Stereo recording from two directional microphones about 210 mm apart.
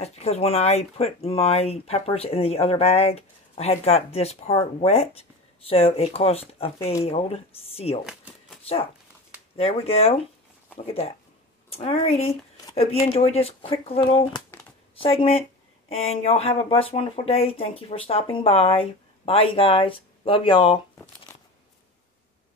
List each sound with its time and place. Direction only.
0.0 s speech: 30° left (ahead or behind)
9.6 s speech: 30° left (ahead or behind)
11.7 s speech: 25° left (ahead or behind)